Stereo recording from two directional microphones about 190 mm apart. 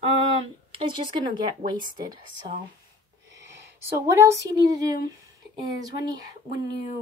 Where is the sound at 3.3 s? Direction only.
15° right (ahead or behind).